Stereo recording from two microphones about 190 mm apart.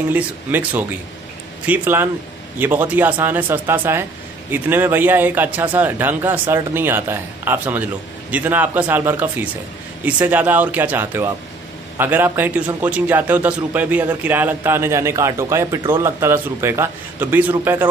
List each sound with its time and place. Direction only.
0.1 s a man's voice: 10° right (ahead or behind)